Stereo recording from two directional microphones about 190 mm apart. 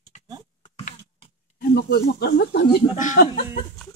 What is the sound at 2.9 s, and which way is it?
Speech, 40° left (ahead or behind).